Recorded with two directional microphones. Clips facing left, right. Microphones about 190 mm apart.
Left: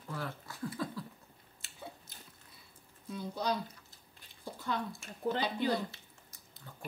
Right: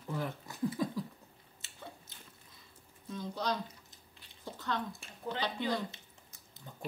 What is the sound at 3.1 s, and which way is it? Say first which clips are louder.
Speech: left 1 dB; 10° left (ahead or behind).